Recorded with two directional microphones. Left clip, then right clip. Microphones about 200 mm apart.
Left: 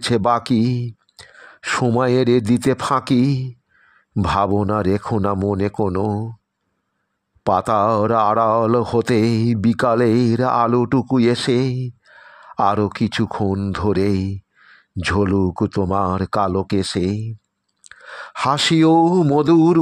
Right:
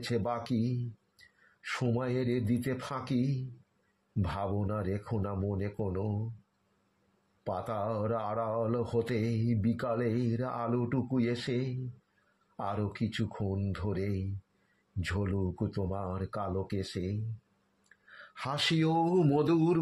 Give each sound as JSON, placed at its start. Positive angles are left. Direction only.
{"t": 0.0, "sound": "a man's voice", "side_deg": 55}
{"t": 7.4, "sound": "speech", "side_deg": 55}